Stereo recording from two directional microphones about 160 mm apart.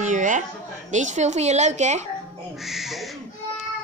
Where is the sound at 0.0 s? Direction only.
50° right (ahead or behind).